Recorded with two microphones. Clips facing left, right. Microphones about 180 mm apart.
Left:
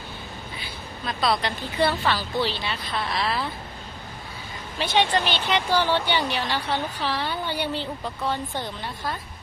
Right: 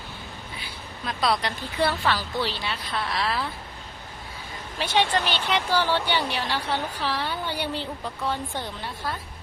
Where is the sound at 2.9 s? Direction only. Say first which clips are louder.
Left 1 dB; 10° left (ahead or behind).